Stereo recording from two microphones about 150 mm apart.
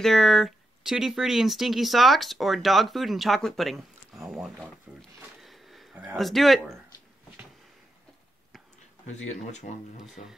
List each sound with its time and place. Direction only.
0.0 s speech: centre (ahead or behind)
5.4 s a sound: centre (ahead or behind)
6.0 s speech: centre (ahead or behind)
9.1 s speech: 50° left (ahead or behind)
10.0 s speech: centre (ahead or behind)